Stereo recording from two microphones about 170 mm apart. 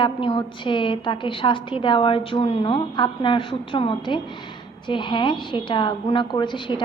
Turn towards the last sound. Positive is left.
turn(degrees=25)  # may be behind; listen again after turning